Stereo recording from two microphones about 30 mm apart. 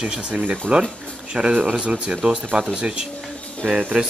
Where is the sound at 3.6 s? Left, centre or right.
Right.